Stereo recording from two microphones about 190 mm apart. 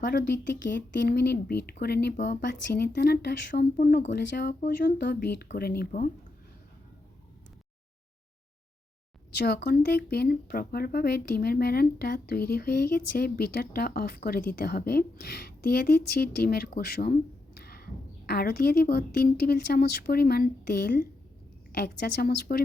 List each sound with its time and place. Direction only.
0.0 s speech: 45° left (ahead or behind)
0.6 s speech: 70° left (ahead or behind); by 6.1 s 50° left (ahead or behind)
9.3 s speech: 60° left (ahead or behind)